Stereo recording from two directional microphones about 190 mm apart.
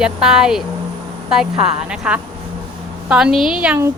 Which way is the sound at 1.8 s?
5° right (ahead or behind).